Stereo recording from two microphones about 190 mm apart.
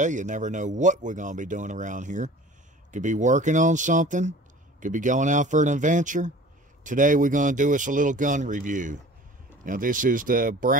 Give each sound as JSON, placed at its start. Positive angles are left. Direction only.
{"t": 0.0, "sound": "speech", "side_deg": -40}